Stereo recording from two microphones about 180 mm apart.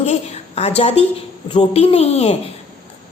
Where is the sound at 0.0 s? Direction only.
35° left (ahead or behind).